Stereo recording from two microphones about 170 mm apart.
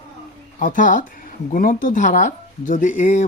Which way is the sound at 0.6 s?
50° left (ahead or behind).